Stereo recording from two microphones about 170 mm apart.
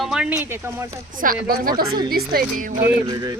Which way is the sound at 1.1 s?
55° right (ahead or behind).